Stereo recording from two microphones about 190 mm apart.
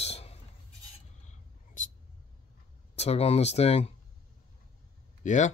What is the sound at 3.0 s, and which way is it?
Speech, 35° left (ahead or behind).